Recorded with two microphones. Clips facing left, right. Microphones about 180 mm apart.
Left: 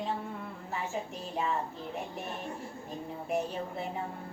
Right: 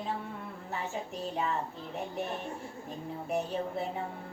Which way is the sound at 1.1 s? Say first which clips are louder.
Right 1 dB; centre (ahead or behind).